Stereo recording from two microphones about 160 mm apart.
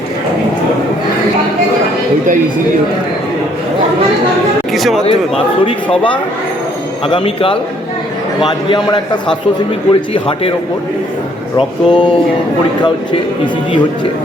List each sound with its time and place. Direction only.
4.7 s a sound: centre (ahead or behind)
5.6 s a man's voice: 35° left (ahead or behind)
11.5 s speech: 30° left (ahead or behind)